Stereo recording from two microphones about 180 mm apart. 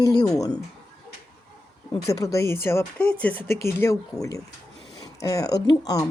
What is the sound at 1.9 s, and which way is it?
Speech, 20° left (ahead or behind).